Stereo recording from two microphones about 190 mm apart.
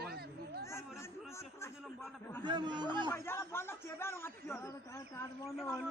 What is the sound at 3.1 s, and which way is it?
A man's voice, 10° left (ahead or behind).